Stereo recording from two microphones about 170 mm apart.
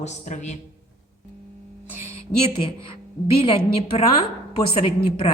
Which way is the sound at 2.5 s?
30° left (ahead or behind).